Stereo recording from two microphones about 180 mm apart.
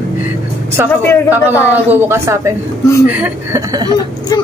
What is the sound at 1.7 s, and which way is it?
A woman's voice, 10° right (ahead or behind).